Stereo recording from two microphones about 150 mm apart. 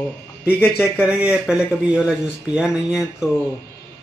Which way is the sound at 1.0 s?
5° right (ahead or behind).